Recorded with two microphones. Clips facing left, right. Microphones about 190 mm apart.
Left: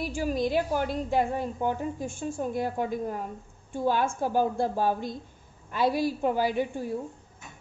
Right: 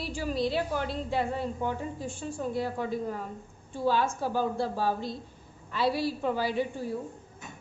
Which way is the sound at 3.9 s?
50° left (ahead or behind).